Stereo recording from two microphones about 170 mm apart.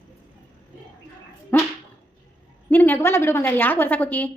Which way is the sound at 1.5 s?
10° left (ahead or behind).